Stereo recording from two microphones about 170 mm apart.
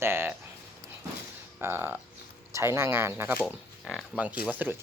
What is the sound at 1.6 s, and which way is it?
Speech, 15° right (ahead or behind).